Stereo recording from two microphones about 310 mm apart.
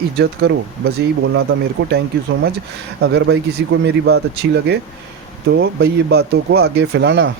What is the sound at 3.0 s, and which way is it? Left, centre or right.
Speech, right.